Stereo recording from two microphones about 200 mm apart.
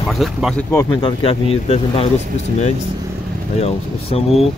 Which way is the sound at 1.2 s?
30° left (ahead or behind).